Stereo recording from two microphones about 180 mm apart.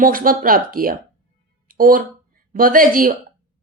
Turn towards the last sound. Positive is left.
turn(degrees=-50)  # may be behind; listen again after turning